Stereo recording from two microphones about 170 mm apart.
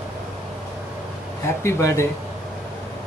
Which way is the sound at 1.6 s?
15° left (ahead or behind).